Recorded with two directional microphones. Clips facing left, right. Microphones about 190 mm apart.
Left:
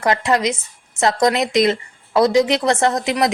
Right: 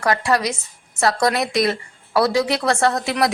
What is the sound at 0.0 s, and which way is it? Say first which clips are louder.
Speech: left 2 dB; 20° left (ahead or behind).